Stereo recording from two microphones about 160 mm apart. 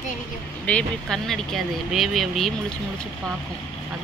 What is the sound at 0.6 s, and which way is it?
Speech, 5° left (ahead or behind).